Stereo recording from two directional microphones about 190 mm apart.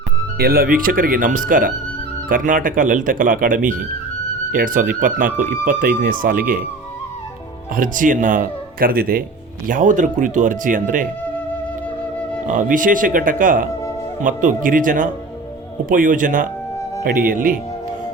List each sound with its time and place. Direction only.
0.3 s speech: 50° right (ahead or behind)
7.8 s speech: 45° right (ahead or behind)
12.5 s speech: 45° right (ahead or behind)